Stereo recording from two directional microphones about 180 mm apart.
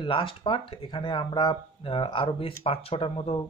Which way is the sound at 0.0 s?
30° left (ahead or behind).